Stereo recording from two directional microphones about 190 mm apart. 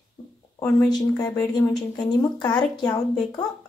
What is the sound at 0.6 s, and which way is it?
Speech, 15° left (ahead or behind).